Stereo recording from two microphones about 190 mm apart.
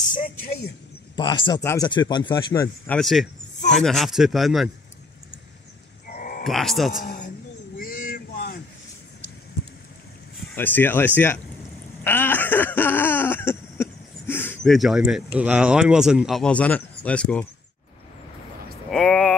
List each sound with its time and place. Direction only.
1.1 s speech: 25° left (ahead or behind)
3.0 s speech: centre (ahead or behind)
6.0 s livestock: 45° left (ahead or behind)
6.4 s speech: centre (ahead or behind)
7.0 s a man's voice: 45° left (ahead or behind)
7.8 s vehicle: 50° left (ahead or behind)
10.5 s speech: 10° left (ahead or behind)
12.0 s a sound: 10° left (ahead or behind)
18.9 s a sound: centre (ahead or behind)